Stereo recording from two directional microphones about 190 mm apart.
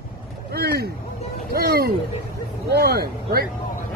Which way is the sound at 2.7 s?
55° right (ahead or behind).